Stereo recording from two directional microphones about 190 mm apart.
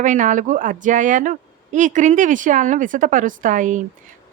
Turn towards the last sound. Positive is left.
turn(degrees=-40)  # may be behind; listen again after turning